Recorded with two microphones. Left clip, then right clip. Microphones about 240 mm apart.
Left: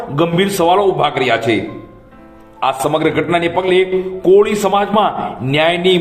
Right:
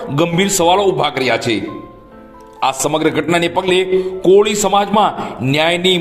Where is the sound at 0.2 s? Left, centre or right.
Right.